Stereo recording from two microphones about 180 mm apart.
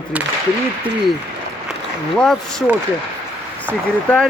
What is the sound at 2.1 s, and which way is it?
Speech, 5° left (ahead or behind).